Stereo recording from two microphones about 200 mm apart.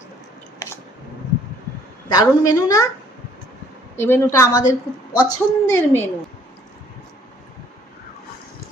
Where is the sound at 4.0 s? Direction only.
10° left (ahead or behind).